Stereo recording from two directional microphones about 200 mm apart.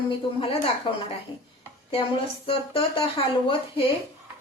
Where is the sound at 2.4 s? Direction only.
25° left (ahead or behind).